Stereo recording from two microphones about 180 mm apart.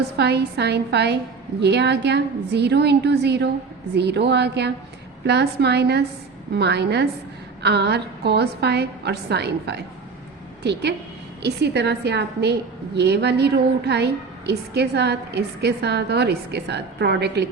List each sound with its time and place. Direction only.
0.2 s a woman's voice: 65° right (ahead or behind)